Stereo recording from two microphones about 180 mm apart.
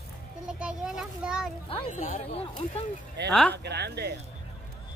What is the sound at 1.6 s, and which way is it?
Speech, 30° left (ahead or behind).